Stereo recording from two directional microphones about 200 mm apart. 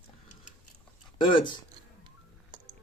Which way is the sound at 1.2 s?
25° left (ahead or behind).